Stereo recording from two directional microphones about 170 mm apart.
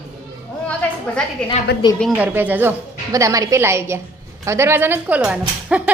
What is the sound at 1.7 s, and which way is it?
Speech, 75° left (ahead or behind).